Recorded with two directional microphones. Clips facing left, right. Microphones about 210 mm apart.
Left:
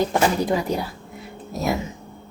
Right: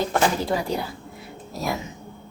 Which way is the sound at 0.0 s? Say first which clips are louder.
Left 2 dB; 15° left (ahead or behind).